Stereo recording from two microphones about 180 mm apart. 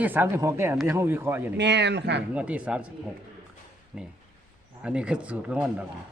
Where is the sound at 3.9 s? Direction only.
5° right (ahead or behind).